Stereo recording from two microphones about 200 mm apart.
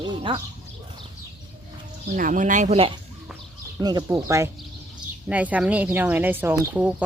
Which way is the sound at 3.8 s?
20° right (ahead or behind).